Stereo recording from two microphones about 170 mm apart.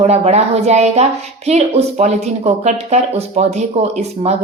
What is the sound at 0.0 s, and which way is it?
Speech, 40° right (ahead or behind).